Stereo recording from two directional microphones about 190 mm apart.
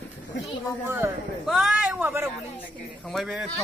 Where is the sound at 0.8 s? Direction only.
10° right (ahead or behind).